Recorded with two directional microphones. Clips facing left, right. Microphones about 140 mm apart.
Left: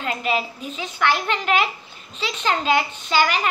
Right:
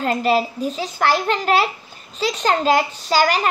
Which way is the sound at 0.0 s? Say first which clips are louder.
Right 6 dB; 40° right (ahead or behind).